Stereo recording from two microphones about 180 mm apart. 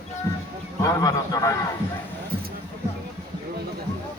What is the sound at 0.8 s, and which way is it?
Speech, 20° left (ahead or behind).